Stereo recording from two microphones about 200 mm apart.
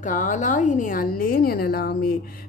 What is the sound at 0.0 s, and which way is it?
A woman's voice, 40° left (ahead or behind).